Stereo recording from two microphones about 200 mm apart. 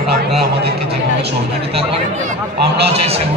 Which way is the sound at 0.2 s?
55° right (ahead or behind).